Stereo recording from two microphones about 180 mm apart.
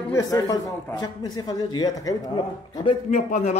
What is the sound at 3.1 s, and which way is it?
Speech, 40° left (ahead or behind).